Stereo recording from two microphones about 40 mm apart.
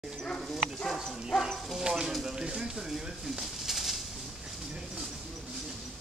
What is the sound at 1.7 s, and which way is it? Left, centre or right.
Speech, centre.